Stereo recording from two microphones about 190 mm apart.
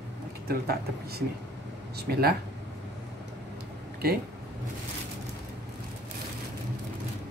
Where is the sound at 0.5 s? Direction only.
55° right (ahead or behind).